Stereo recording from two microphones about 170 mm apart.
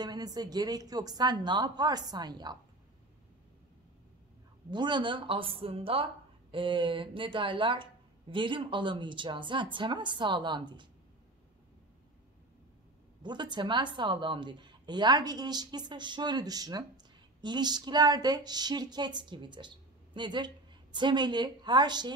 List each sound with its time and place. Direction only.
0.0 s a woman's voice: 25° right (ahead or behind)
4.6 s a woman's voice: 25° right (ahead or behind)
13.2 s a woman's voice: 25° right (ahead or behind)